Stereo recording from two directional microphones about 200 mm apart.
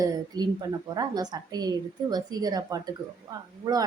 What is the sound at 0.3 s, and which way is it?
Speech, 20° right (ahead or behind).